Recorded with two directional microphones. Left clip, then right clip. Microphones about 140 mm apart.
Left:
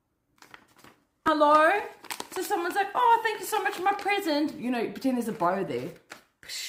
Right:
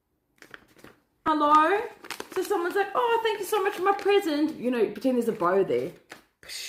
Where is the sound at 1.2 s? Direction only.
40° left (ahead or behind).